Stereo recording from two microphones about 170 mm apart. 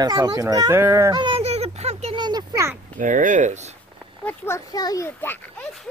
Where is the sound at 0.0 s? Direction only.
20° right (ahead or behind).